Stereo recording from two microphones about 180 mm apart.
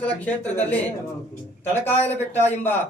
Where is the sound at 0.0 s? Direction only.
10° left (ahead or behind).